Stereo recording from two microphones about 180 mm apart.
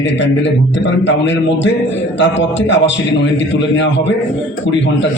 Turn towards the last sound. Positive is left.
turn(degrees=90)